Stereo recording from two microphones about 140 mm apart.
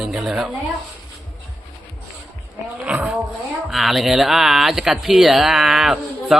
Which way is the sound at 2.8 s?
10° right (ahead or behind).